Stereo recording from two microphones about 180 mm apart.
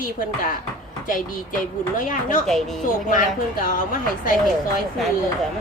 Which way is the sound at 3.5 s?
50° left (ahead or behind).